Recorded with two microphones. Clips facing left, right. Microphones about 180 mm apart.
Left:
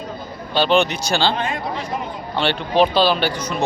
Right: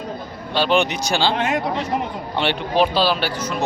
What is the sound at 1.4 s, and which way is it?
Speech, 75° right (ahead or behind).